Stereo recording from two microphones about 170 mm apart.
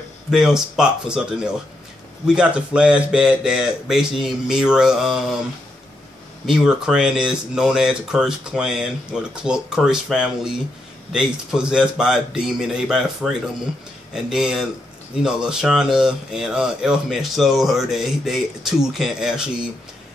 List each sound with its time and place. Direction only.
0.3 s speech: 5° right (ahead or behind)
6.4 s speech: 5° right (ahead or behind)